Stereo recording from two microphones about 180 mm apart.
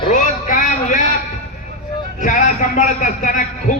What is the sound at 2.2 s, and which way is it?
A man's voice, 45° left (ahead or behind).